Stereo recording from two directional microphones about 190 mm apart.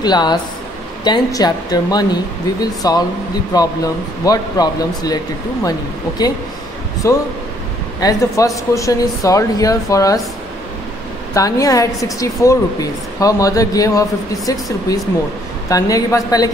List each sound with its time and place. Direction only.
0.0 s speech: 20° left (ahead or behind)
11.3 s speech: 15° left (ahead or behind)